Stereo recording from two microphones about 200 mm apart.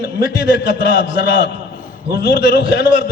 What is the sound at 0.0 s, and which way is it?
A man's voice, 55° left (ahead or behind).